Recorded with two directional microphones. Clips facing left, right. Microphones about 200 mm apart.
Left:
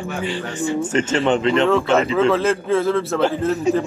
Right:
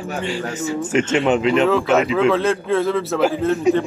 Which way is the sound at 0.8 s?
10° right (ahead or behind).